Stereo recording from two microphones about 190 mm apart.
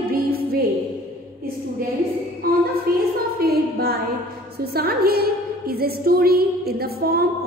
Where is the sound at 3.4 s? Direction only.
55° right (ahead or behind).